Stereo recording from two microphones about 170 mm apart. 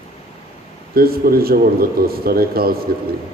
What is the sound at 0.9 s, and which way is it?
Speech, 60° right (ahead or behind).